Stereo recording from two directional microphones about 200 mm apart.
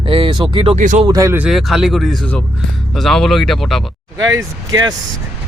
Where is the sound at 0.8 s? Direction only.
40° right (ahead or behind).